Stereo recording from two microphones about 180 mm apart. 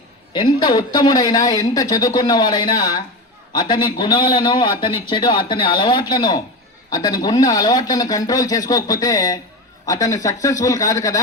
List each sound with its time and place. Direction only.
0.3 s a man's voice: 25° left (ahead or behind)